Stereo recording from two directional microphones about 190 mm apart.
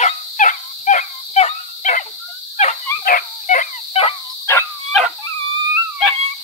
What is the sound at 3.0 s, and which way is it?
Dog, 45° left (ahead or behind).